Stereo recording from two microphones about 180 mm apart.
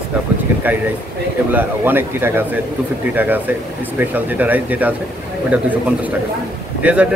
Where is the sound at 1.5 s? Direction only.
10° right (ahead or behind).